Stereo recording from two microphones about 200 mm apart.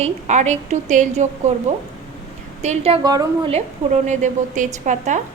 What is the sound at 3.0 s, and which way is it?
Speech, 20° right (ahead or behind).